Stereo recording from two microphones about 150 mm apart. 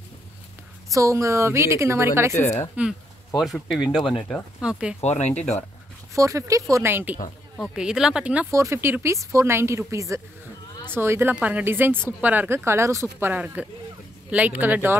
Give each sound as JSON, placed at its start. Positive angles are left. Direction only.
{"t": 0.9, "sound": "speech", "side_deg": -20}
{"t": 2.7, "sound": "speech", "side_deg": -5}
{"t": 4.2, "sound": "speech", "side_deg": 10}
{"t": 4.6, "sound": "speech", "side_deg": -5}
{"t": 5.0, "sound": "speech", "side_deg": 50}
{"t": 6.1, "sound": "speech", "side_deg": -20}
{"t": 8.5, "sound": "speech", "side_deg": -20}